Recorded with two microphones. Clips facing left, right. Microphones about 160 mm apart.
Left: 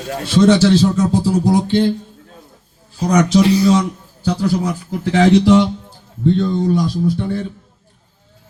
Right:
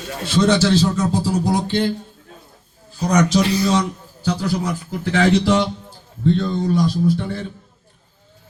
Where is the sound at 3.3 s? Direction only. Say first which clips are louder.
Left 5 dB; 10° left (ahead or behind).